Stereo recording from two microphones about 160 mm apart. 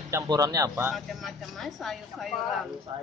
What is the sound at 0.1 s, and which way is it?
Speech, 20° right (ahead or behind).